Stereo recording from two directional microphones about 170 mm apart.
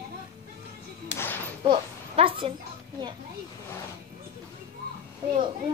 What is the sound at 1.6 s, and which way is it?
Speech, 30° right (ahead or behind).